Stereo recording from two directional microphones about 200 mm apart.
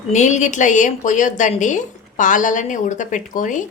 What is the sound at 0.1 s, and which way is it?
A woman's voice, 35° left (ahead or behind).